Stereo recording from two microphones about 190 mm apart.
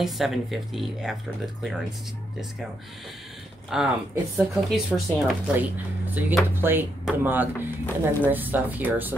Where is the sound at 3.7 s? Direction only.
5° right (ahead or behind).